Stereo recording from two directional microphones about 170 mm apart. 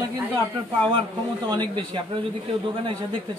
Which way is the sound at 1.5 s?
30° right (ahead or behind).